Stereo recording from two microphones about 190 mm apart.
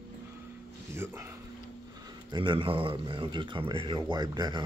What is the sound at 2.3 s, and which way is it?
Speech, 25° right (ahead or behind).